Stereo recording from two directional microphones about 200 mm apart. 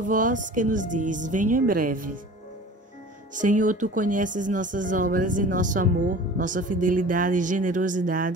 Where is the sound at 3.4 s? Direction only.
40° right (ahead or behind).